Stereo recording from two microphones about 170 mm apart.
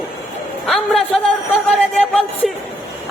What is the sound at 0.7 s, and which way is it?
Speech, 5° left (ahead or behind).